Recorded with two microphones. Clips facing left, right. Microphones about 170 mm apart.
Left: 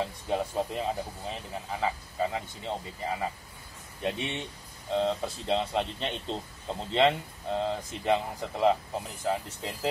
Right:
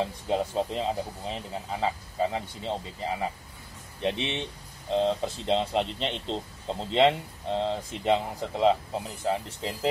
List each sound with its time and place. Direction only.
0.0 s speech: 20° right (ahead or behind)